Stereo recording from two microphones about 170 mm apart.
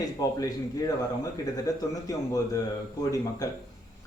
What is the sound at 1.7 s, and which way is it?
Speech, 20° left (ahead or behind).